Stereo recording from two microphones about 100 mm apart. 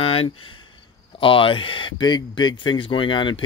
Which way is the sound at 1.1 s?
65° left (ahead or behind).